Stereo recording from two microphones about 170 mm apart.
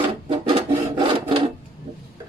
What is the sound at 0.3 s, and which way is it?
Filing, 30° right (ahead or behind).